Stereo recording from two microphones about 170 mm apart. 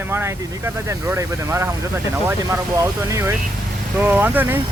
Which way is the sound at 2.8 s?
15° right (ahead or behind).